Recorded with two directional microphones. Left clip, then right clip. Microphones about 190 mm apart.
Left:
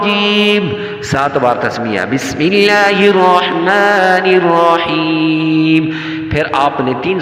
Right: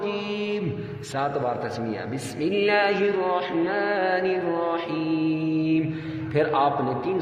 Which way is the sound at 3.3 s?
40° left (ahead or behind).